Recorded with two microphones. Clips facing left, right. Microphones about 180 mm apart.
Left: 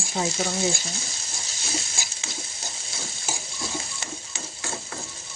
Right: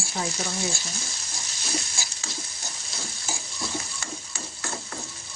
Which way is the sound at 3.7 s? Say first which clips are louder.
Even; 25° left (ahead or behind).